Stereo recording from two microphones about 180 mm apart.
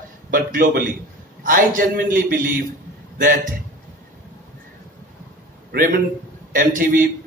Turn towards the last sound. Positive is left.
turn(degrees=-50)  # may be behind; listen again after turning